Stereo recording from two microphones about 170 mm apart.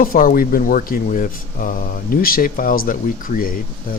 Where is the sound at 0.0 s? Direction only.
55° left (ahead or behind).